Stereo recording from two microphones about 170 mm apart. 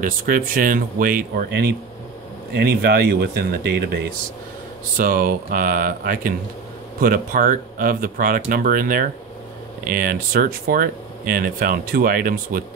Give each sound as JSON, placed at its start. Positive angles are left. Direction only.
{"t": 0.0, "sound": "speech", "side_deg": -55}
{"t": 4.9, "sound": "speech", "side_deg": -55}